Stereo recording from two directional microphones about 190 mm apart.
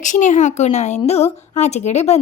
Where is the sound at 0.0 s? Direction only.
40° left (ahead or behind).